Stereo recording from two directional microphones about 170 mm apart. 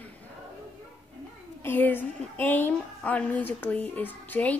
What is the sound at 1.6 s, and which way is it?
Speech, 10° left (ahead or behind).